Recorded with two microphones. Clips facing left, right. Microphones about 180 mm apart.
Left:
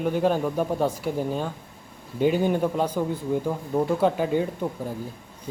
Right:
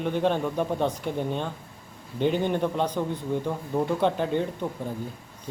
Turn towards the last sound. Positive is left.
turn(degrees=5)  # may be behind; listen again after turning